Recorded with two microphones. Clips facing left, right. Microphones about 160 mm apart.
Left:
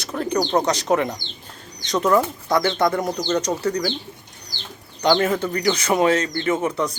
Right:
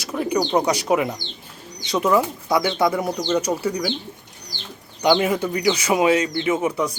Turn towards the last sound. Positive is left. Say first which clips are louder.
# even
turn(degrees=-10)  # may be behind; listen again after turning